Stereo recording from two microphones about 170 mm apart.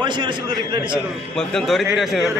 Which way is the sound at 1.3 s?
Centre (ahead or behind).